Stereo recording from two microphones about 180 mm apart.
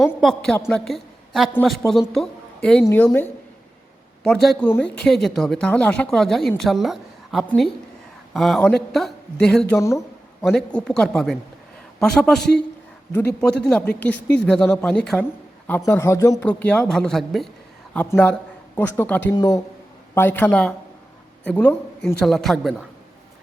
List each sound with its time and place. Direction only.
0.0 s a woman's voice: centre (ahead or behind)
9.7 s speech: 15° left (ahead or behind)
10.4 s speech: 5° left (ahead or behind)
13.7 s speech: 5° left (ahead or behind)
18.0 s speech: 10° left (ahead or behind)